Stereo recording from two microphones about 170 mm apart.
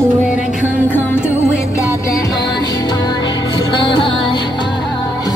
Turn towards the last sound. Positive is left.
turn(degrees=30)  # may be behind; listen again after turning